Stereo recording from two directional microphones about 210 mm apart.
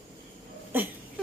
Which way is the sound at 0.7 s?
10° right (ahead or behind).